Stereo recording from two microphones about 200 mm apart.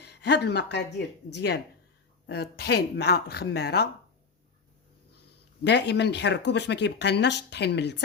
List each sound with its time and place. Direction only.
0.0 s speech: 55° left (ahead or behind)
5.6 s speech: 60° left (ahead or behind)